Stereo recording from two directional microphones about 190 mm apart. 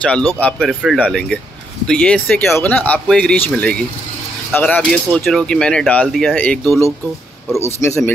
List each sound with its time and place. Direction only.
0.0 s speech: 5° left (ahead or behind)